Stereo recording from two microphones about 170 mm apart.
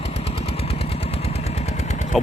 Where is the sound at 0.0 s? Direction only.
35° left (ahead or behind).